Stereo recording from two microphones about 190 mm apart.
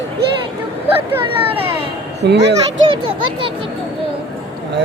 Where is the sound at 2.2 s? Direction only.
65° right (ahead or behind).